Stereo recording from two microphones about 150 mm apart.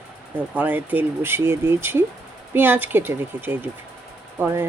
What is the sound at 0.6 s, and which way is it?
Speech, 10° right (ahead or behind).